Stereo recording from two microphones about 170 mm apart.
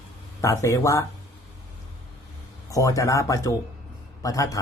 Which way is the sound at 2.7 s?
20° left (ahead or behind).